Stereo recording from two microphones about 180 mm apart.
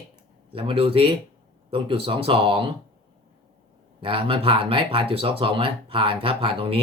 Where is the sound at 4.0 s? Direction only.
30° right (ahead or behind).